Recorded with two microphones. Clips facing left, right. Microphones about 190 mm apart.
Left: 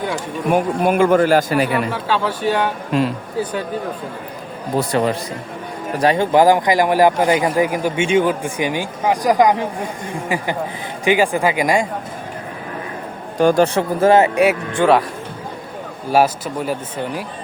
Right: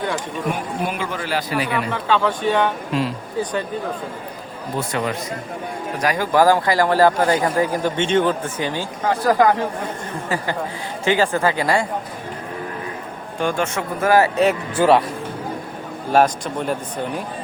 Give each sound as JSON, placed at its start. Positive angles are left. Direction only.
{"t": 0.5, "sound": "a man's voice", "side_deg": 50}
{"t": 1.9, "sound": "speech", "side_deg": 10}
{"t": 4.8, "sound": "speech", "side_deg": 35}
{"t": 13.4, "sound": "speech", "side_deg": 40}
{"t": 14.2, "sound": "speech", "side_deg": 10}
{"t": 14.8, "sound": "a man's voice", "side_deg": 0}
{"t": 16.1, "sound": "a man's voice", "side_deg": 5}